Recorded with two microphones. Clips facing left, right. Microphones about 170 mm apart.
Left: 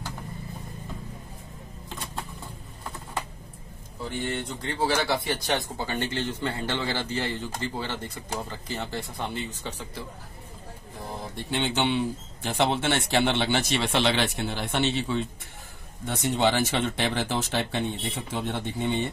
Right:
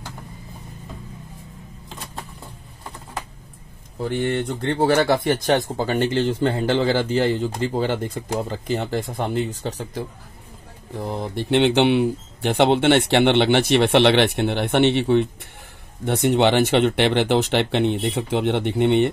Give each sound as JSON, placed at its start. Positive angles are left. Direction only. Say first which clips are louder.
{"t": 4.0, "sound": "speech", "louder": "right 8 dB", "side_deg": -60}
{"t": 5.8, "sound": "speech", "louder": "right 9 dB", "side_deg": -70}
{"t": 6.5, "sound": "speech", "louder": "right 10 dB", "side_deg": -55}
{"t": 9.1, "sound": "speech", "louder": "right 9 dB", "side_deg": -50}
{"t": 11.0, "sound": "speech", "louder": "right 10 dB", "side_deg": -70}